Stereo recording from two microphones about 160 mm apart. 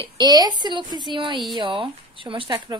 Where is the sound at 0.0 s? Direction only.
25° right (ahead or behind).